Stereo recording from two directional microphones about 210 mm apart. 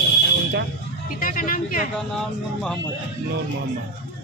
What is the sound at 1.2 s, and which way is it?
Speech, 40° left (ahead or behind).